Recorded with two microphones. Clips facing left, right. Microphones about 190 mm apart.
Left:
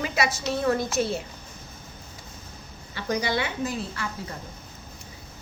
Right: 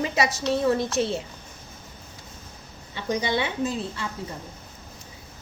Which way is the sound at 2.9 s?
25° right (ahead or behind).